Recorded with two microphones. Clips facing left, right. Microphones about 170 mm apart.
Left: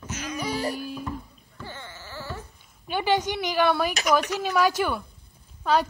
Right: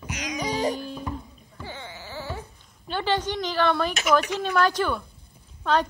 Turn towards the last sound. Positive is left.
turn(degrees=5)  # may be behind; listen again after turning